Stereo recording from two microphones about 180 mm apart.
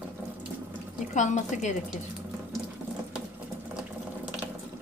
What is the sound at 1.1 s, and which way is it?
Speech, 40° left (ahead or behind).